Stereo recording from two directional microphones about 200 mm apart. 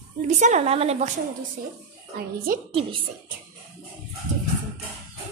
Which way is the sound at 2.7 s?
25° right (ahead or behind).